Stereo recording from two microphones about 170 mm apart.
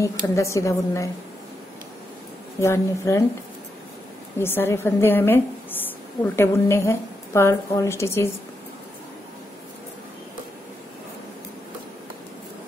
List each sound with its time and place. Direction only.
0.0 s a woman's voice: 20° left (ahead or behind)
2.6 s a woman's voice: 15° left (ahead or behind)
4.4 s a woman's voice: 15° left (ahead or behind)